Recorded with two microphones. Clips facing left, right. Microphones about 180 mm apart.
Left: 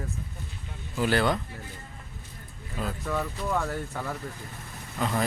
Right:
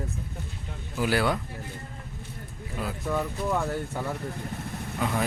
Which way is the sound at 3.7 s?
25° right (ahead or behind).